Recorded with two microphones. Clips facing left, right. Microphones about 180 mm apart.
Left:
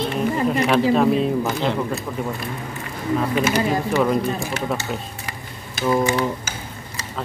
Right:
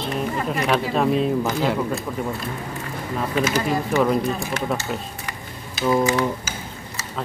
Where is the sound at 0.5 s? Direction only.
Centre (ahead or behind).